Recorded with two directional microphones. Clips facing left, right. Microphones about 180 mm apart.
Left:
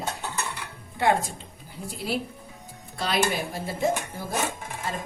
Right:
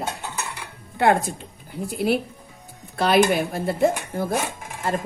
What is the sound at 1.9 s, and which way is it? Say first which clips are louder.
A woman's voice: right 7 dB; 60° right (ahead or behind).